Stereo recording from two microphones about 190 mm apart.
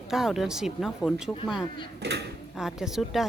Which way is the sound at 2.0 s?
60° right (ahead or behind).